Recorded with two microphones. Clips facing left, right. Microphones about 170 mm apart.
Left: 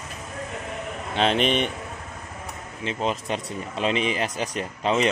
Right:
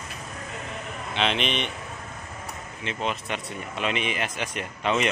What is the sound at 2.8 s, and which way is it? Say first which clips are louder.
Speech: left 3 dB; 35° left (ahead or behind).